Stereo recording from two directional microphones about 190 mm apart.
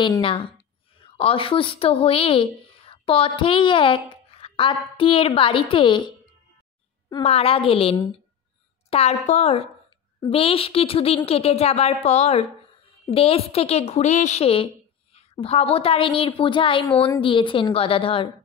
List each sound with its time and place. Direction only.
0.0 s a woman's voice: 25° left (ahead or behind)